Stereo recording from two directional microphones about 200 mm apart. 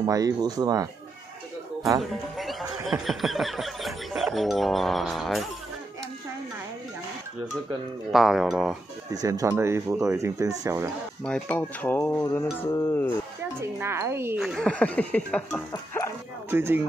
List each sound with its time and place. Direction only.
0.0 s speech: 20° right (ahead or behind)
2.0 s speech: centre (ahead or behind)
8.1 s speech: centre (ahead or behind)
9.1 s speech: 15° right (ahead or behind)
11.2 s speech: 5° left (ahead or behind)
13.6 s speech: 10° right (ahead or behind)
14.4 s speech: centre (ahead or behind); by 16.1 s 15° left (ahead or behind)
16.4 s speech: 10° right (ahead or behind)